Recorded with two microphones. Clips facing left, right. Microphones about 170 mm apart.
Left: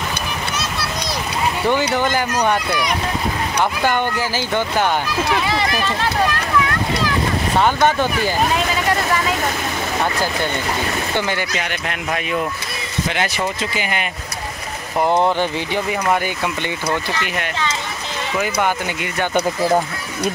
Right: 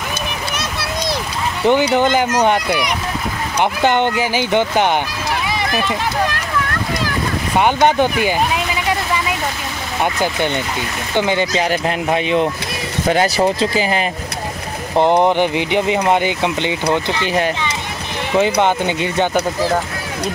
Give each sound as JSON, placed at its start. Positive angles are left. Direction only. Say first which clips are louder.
{"t": 1.7, "sound": "speech", "louder": "right 6 dB", "side_deg": -20}
{"t": 3.8, "sound": "speech", "louder": "right 4 dB", "side_deg": -20}
{"t": 7.6, "sound": "speech", "louder": "right 4 dB", "side_deg": -15}
{"t": 11.1, "sound": "speech", "louder": "right 7 dB", "side_deg": -20}
{"t": 11.5, "sound": "speech", "louder": "right 7 dB", "side_deg": -30}
{"t": 15.0, "sound": "speech", "louder": "right 4 dB", "side_deg": -20}
{"t": 18.3, "sound": "speech", "louder": "right 6 dB", "side_deg": -25}